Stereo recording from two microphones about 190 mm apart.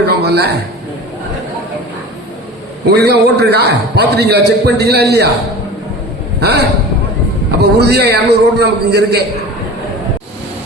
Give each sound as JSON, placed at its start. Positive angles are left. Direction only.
{"t": 0.0, "sound": "a sound", "side_deg": -60}
{"t": 2.9, "sound": "a man's voice", "side_deg": -60}
{"t": 6.4, "sound": "a man's voice", "side_deg": -60}